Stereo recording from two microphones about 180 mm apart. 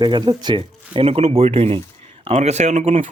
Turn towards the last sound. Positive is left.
turn(degrees=-40)  # may be behind; listen again after turning